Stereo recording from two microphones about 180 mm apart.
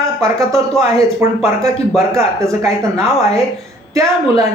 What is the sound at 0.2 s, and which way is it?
Speech, 15° right (ahead or behind).